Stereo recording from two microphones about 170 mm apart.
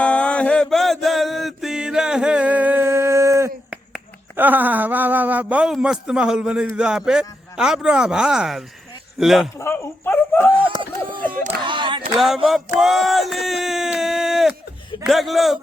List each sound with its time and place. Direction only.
0.0 s mantra: 5° left (ahead or behind); by 3.5 s 15° right (ahead or behind)
3.7 s finger snapping: 10° right (ahead or behind)
9.6 s speech: 15° left (ahead or behind)
10.7 s speech: 30° right (ahead or behind)
11.4 s a sound: 30° right (ahead or behind)
12.1 s finger snapping: centre (ahead or behind)
12.8 s speech: centre (ahead or behind)
15.0 s finger snapping: centre (ahead or behind)